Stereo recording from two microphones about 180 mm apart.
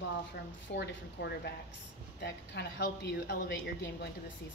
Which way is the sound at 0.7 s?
75° left (ahead or behind).